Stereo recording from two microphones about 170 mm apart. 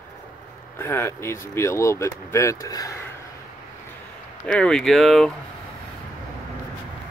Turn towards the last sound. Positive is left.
turn(degrees=0)  # may be behind; listen again after turning